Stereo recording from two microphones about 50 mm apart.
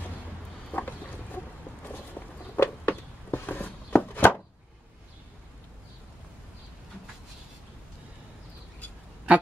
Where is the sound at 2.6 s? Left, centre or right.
Left.